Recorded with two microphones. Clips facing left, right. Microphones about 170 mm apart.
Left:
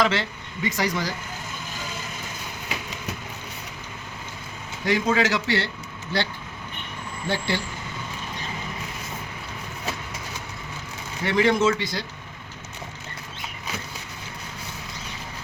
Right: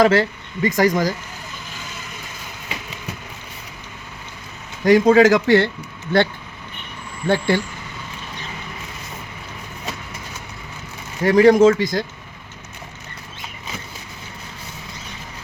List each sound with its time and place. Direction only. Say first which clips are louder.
0.0 s speech: right 8 dB; 45° right (ahead or behind)
4.9 s speech: right 10 dB; 45° right (ahead or behind)
7.3 s speech: right 8 dB; 50° right (ahead or behind)
11.2 s speech: right 9 dB; 40° right (ahead or behind)